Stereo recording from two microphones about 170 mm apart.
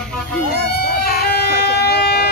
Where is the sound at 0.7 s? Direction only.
65° left (ahead or behind).